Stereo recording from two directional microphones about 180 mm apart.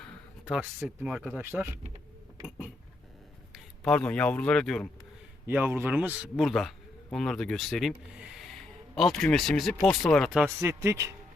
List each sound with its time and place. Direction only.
0.5 s speech: 5° right (ahead or behind)
3.5 s a man's voice: 5° left (ahead or behind)
5.5 s a man's voice: 10° right (ahead or behind)
10.6 s a man's voice: 15° right (ahead or behind)